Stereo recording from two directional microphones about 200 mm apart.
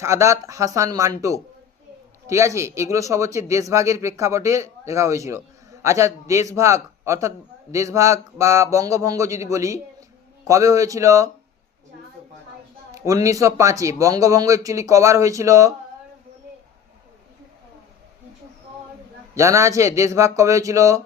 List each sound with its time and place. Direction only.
0.0 s a man's voice: 15° right (ahead or behind)
2.2 s a man's voice: 15° right (ahead or behind)
12.9 s a man's voice: 15° right (ahead or behind)
19.4 s a man's voice: 15° right (ahead or behind)